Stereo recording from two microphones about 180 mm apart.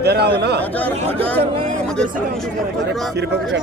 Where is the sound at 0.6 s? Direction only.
10° left (ahead or behind).